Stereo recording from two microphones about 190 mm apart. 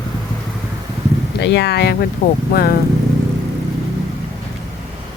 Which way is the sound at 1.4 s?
65° left (ahead or behind).